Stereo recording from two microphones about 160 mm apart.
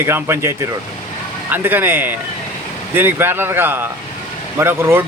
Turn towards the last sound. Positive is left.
turn(degrees=-15)  # may be behind; listen again after turning